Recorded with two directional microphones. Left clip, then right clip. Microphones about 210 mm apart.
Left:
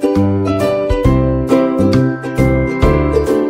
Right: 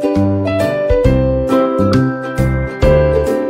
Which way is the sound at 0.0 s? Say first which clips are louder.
Even; centre (ahead or behind).